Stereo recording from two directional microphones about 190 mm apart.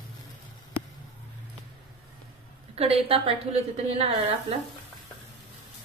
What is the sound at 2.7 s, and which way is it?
A woman's voice, 30° right (ahead or behind).